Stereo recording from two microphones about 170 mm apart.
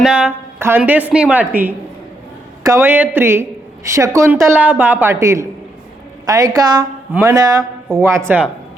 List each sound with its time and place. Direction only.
0.0 s a woman's voice: 5° right (ahead or behind); by 6.8 s 25° right (ahead or behind)
7.1 s a woman's voice: 10° right (ahead or behind)
7.3 s a woman's voice: 20° right (ahead or behind)